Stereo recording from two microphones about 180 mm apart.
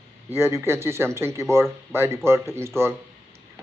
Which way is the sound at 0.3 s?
15° right (ahead or behind).